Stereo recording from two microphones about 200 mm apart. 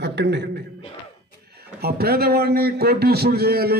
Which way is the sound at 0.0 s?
60° right (ahead or behind).